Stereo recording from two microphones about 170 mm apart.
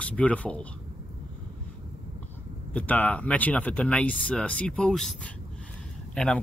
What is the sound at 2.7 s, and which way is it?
Speech, 10° left (ahead or behind).